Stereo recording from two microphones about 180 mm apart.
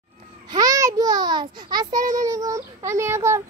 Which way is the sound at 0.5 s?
20° right (ahead or behind).